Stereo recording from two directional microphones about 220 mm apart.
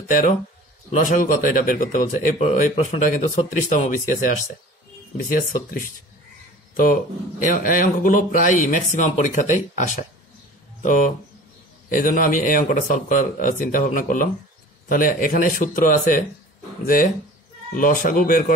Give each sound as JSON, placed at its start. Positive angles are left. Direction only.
{"t": 0.9, "sound": "speech", "side_deg": 35}